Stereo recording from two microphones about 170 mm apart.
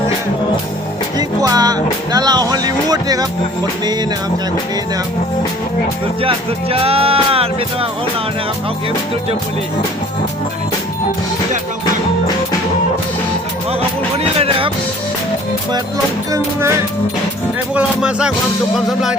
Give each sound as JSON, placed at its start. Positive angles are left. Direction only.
{"t": 1.4, "sound": "music", "side_deg": -20}
{"t": 6.2, "sound": "speech", "side_deg": -35}
{"t": 14.3, "sound": "music", "side_deg": -35}
{"t": 16.3, "sound": "music", "side_deg": -15}
{"t": 17.7, "sound": "speech", "side_deg": -5}